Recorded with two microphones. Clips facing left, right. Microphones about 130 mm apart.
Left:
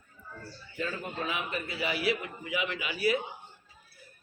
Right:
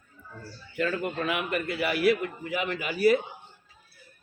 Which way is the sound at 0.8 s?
65° right (ahead or behind).